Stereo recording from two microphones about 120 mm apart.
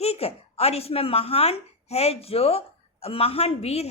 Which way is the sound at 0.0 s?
55° left (ahead or behind).